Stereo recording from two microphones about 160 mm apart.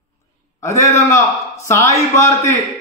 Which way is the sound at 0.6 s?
20° left (ahead or behind).